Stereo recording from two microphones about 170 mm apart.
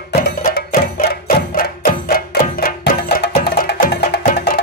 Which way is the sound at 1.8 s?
60° left (ahead or behind).